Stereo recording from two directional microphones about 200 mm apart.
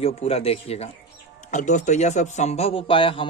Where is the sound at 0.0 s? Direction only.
30° left (ahead or behind).